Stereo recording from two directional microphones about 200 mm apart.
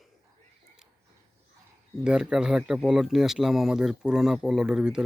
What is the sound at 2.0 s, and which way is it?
Speech, 5° right (ahead or behind).